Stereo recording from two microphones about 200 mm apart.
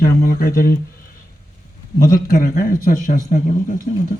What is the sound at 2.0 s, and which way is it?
Speech, 45° left (ahead or behind).